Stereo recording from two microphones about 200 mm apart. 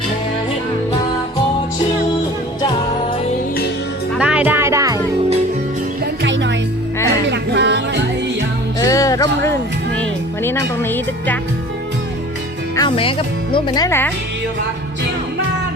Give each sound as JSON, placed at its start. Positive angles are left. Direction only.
{"t": 4.1, "sound": "music", "side_deg": -5}
{"t": 6.2, "sound": "music", "side_deg": -65}
{"t": 8.8, "sound": "music", "side_deg": 15}
{"t": 12.7, "sound": "speech", "side_deg": 25}